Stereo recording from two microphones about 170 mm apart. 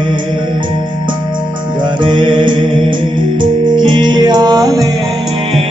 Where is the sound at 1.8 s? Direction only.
25° right (ahead or behind).